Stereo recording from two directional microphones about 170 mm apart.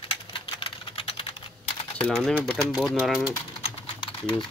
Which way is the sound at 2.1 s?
Centre (ahead or behind).